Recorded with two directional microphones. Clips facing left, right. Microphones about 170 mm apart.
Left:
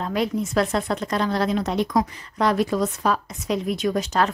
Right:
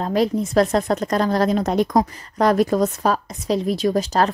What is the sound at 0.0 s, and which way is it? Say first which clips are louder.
A woman's voice: right 4 dB; 35° right (ahead or behind).